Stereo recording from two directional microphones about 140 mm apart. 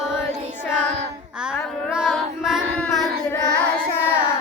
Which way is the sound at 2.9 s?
5° left (ahead or behind).